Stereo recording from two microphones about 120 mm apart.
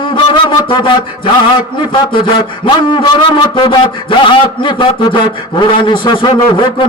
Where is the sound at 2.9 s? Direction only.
40° left (ahead or behind).